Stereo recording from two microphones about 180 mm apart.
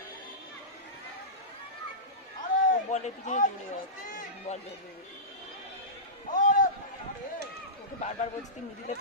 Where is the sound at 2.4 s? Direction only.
45° left (ahead or behind).